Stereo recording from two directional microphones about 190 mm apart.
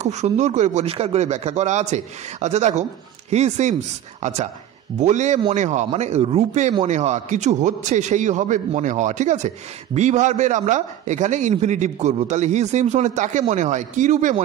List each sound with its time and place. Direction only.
0.0 s a man's voice: 35° right (ahead or behind)